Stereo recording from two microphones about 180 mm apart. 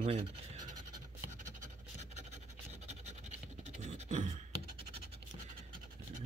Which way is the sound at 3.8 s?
40° right (ahead or behind).